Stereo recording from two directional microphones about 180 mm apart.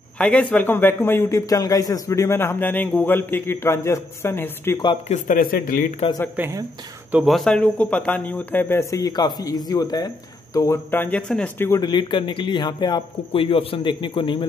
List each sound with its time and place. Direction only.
0.2 s a man's voice: 5° left (ahead or behind)
5.0 s speech: 45° left (ahead or behind)
6.3 s a man's voice: 10° right (ahead or behind); by 11.8 s 10° left (ahead or behind)
11.8 s speech: 25° left (ahead or behind)